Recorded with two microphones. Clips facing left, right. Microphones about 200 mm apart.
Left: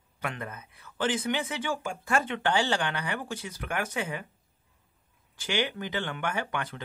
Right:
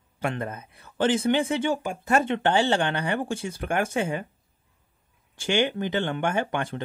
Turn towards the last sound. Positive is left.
turn(degrees=-25)  # may be behind; listen again after turning